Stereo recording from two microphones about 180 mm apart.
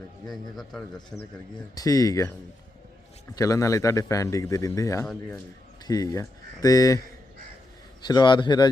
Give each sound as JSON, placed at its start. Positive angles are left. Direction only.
{"t": 0.3, "sound": "a man's voice", "side_deg": 0}
{"t": 1.7, "sound": "a man's voice", "side_deg": 20}
{"t": 3.3, "sound": "speech", "side_deg": 20}
{"t": 8.0, "sound": "a man's voice", "side_deg": 25}